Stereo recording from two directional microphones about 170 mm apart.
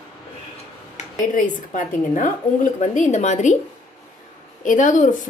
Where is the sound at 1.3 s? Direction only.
50° left (ahead or behind).